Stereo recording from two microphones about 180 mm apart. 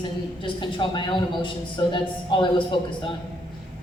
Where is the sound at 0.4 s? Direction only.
25° left (ahead or behind).